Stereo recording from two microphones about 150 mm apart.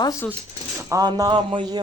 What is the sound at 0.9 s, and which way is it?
Speech, 25° right (ahead or behind).